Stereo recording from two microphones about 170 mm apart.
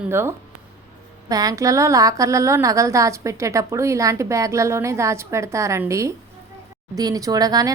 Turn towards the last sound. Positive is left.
turn(degrees=-20)  # may be behind; listen again after turning